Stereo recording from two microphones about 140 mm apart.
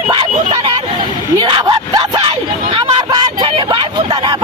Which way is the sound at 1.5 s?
30° right (ahead or behind).